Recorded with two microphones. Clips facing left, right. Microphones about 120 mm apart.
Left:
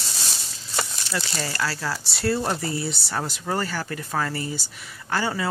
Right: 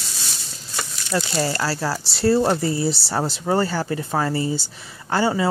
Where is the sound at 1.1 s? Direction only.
30° right (ahead or behind).